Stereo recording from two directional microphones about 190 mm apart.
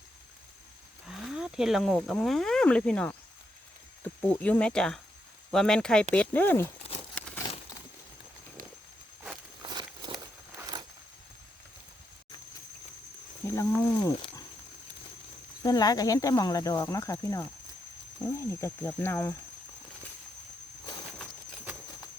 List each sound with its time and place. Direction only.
1.0 s speech: 5° right (ahead or behind)
7.2 s a sound: 5° left (ahead or behind)
9.6 s walk: 20° right (ahead or behind)
13.5 s speech: 15° left (ahead or behind)
15.6 s speech: 20° left (ahead or behind)